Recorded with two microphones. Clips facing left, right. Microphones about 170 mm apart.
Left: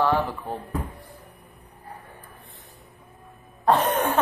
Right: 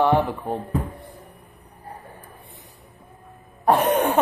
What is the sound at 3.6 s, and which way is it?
Cough, 15° right (ahead or behind).